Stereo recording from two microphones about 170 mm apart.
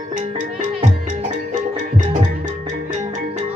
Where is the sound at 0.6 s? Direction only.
45° right (ahead or behind).